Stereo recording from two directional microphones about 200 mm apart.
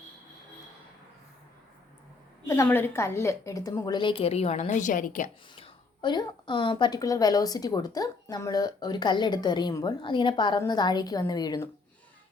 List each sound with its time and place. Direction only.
2.5 s a woman's voice: 10° left (ahead or behind); by 5.3 s 40° left (ahead or behind)
5.5 s a woman's voice: 25° left (ahead or behind)